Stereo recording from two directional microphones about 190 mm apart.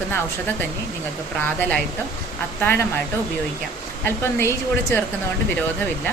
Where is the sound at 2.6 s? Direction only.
10° left (ahead or behind).